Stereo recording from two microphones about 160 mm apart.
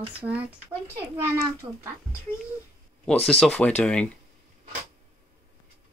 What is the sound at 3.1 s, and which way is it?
Speech, 5° left (ahead or behind).